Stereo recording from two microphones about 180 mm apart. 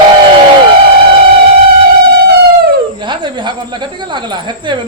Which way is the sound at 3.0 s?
25° right (ahead or behind).